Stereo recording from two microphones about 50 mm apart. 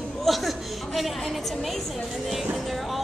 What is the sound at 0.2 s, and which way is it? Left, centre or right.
A woman's voice, centre.